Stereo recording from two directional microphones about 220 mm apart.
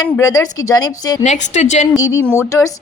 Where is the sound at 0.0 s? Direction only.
15° left (ahead or behind).